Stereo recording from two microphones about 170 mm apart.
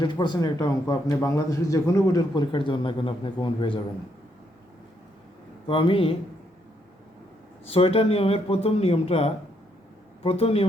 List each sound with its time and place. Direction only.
0.0 s a man's voice: 25° left (ahead or behind)
5.6 s speech: 30° left (ahead or behind)
7.7 s speech: 35° left (ahead or behind)